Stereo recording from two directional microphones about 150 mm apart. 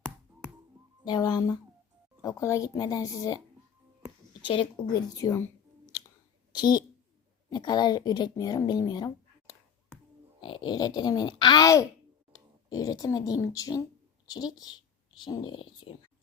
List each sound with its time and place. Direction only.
1.0 s a woman's voice: 30° left (ahead or behind)
4.4 s a woman's voice: 35° left (ahead or behind)
5.9 s a sound: 25° left (ahead or behind)
6.5 s a woman's voice: 30° left (ahead or behind)